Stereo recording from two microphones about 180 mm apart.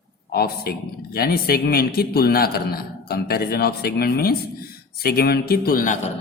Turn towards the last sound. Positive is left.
turn(degrees=50)  # may be behind; listen again after turning